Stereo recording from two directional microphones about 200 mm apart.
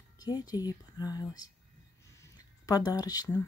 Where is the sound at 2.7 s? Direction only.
20° left (ahead or behind).